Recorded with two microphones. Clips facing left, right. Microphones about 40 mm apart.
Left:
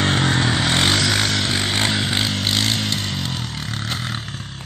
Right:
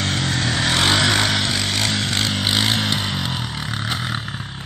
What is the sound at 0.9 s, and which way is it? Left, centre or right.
Vehicle, centre.